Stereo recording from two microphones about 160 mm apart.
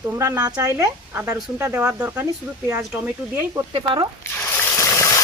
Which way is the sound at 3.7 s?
30° right (ahead or behind).